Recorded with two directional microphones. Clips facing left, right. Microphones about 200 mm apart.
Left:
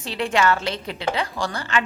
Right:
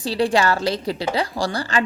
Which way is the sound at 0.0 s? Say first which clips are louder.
Right 3 dB; 35° right (ahead or behind).